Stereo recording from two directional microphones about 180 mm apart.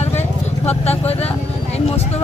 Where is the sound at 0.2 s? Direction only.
35° left (ahead or behind).